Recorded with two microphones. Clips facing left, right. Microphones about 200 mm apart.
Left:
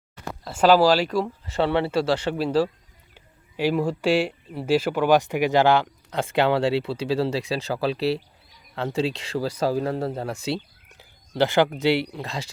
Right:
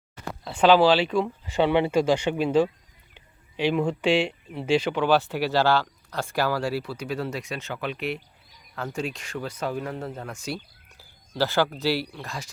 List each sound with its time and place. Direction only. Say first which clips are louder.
0.4 s speech: left 1 dB; 5° left (ahead or behind)
1.8 s speech: right 1 dB; 15° right (ahead or behind)
2.4 s speech: right 1 dB; centre (ahead or behind); by 10.3 s 35° left (ahead or behind)
10.9 s speech: left 4 dB; 20° left (ahead or behind)